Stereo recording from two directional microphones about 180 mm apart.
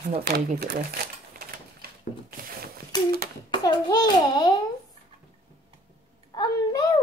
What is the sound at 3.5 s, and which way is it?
Speech, 20° left (ahead or behind).